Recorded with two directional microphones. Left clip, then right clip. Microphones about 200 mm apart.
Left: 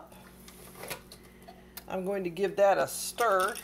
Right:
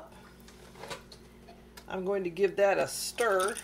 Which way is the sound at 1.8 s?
15° left (ahead or behind).